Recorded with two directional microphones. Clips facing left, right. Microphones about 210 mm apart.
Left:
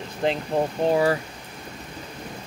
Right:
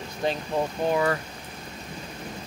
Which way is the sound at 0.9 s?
30° left (ahead or behind).